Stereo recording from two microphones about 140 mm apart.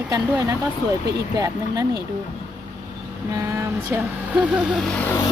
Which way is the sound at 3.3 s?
20° right (ahead or behind).